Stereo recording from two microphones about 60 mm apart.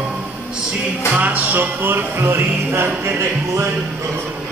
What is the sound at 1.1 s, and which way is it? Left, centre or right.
Music, right.